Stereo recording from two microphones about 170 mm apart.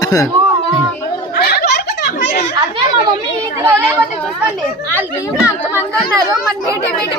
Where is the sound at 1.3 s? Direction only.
75° left (ahead or behind).